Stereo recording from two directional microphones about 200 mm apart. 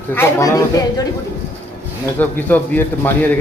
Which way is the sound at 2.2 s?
10° left (ahead or behind).